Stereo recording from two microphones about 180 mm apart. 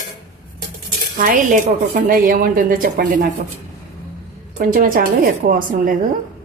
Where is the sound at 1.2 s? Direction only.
50° right (ahead or behind).